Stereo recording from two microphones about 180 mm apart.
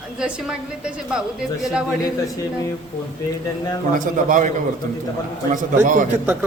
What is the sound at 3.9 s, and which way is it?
Speech, 45° right (ahead or behind).